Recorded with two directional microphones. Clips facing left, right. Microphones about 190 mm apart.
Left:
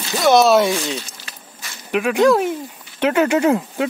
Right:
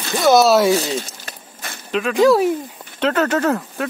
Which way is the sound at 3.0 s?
10° left (ahead or behind).